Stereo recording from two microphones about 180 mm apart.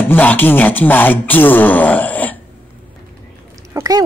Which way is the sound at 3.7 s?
15° right (ahead or behind).